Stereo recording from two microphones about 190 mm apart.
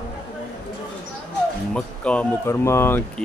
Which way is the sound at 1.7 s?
5° left (ahead or behind).